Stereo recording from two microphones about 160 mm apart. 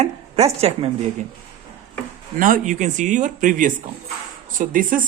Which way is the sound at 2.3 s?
55° right (ahead or behind).